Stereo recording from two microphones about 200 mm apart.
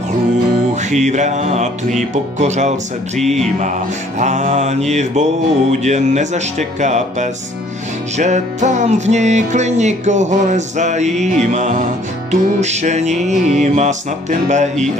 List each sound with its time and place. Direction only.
0.8 s music: 35° right (ahead or behind)